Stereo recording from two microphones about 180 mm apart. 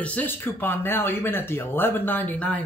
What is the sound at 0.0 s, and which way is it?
Speech, 10° left (ahead or behind).